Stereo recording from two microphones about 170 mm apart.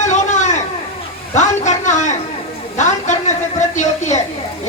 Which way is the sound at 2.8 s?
45° left (ahead or behind).